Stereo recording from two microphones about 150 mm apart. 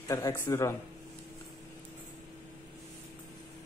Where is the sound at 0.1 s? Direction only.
25° left (ahead or behind).